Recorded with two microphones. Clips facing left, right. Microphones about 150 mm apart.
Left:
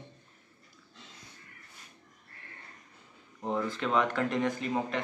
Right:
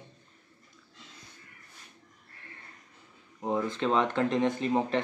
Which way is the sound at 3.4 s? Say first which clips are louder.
Right 3 dB; 15° right (ahead or behind).